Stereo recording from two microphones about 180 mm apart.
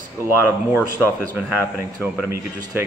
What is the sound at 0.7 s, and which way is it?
Speech, 15° left (ahead or behind).